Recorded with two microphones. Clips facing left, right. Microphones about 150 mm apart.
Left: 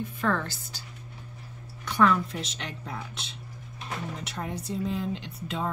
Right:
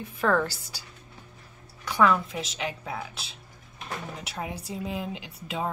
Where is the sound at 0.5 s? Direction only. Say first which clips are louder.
Left 1 dB; 10° right (ahead or behind).